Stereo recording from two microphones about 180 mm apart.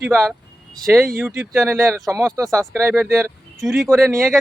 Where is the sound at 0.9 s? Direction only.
Centre (ahead or behind).